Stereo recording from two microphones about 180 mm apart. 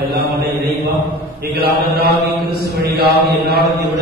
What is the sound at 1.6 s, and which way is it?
Mantra, 65° right (ahead or behind).